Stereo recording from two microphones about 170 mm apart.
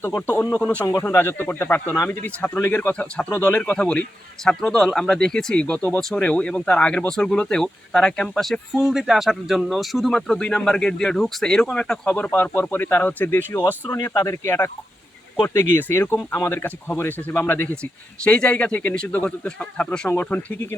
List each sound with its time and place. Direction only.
0.0 s speech: 10° left (ahead or behind)